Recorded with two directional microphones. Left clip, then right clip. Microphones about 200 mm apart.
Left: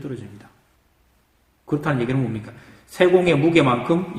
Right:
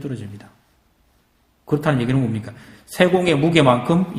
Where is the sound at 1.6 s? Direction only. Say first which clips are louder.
Right 3 dB; 50° right (ahead or behind).